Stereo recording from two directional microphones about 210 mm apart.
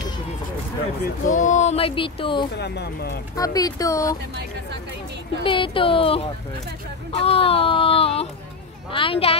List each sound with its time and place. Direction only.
1.0 s speech: 35° left (ahead or behind)
2.5 s speech: 50° left (ahead or behind)
3.3 s speech: 15° left (ahead or behind)
5.4 s speech: 25° left (ahead or behind)